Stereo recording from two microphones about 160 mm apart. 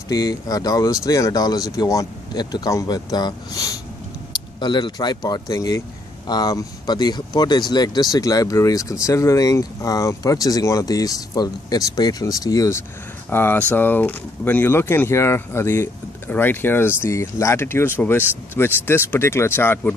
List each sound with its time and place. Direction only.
0.1 s speech: 25° left (ahead or behind)